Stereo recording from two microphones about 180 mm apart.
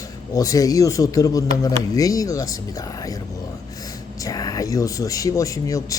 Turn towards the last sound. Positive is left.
turn(degrees=20)  # may be behind; listen again after turning